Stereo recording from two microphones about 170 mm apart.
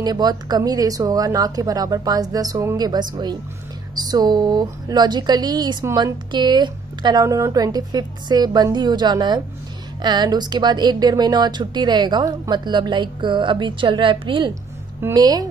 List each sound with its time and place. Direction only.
0.0 s a woman's voice: 25° right (ahead or behind)
15.0 s a woman's voice: 20° right (ahead or behind)